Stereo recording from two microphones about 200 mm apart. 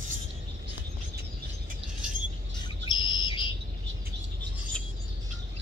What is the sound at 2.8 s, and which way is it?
Bird, 25° left (ahead or behind).